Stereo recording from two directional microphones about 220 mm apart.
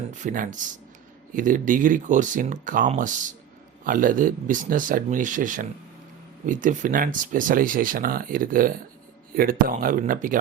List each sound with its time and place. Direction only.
0.1 s speech: 35° right (ahead or behind)